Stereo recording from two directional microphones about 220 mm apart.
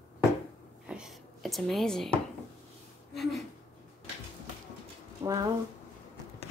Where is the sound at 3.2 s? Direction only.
Centre (ahead or behind).